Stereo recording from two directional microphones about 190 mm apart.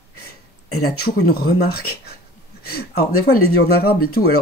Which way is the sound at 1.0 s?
55° left (ahead or behind).